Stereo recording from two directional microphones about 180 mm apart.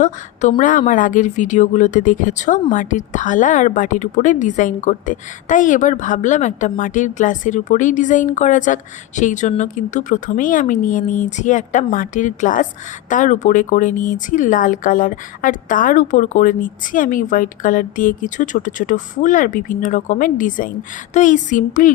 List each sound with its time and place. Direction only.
0.0 s a woman's voice: 45° left (ahead or behind)